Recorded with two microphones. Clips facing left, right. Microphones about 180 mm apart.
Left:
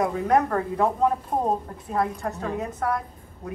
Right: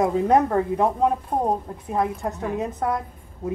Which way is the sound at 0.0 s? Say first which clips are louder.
Right 3 dB; 20° right (ahead or behind).